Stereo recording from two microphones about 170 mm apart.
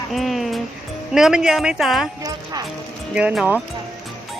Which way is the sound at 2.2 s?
20° right (ahead or behind).